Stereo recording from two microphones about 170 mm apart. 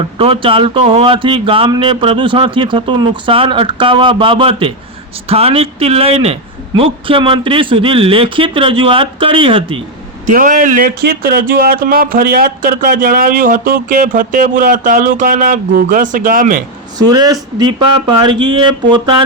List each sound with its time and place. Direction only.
0.2 s speech: 30° right (ahead or behind)
10.3 s speech: 50° right (ahead or behind)
17.1 s speech: 25° right (ahead or behind)